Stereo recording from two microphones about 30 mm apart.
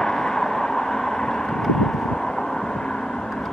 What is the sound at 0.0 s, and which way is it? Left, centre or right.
Vehicle, centre.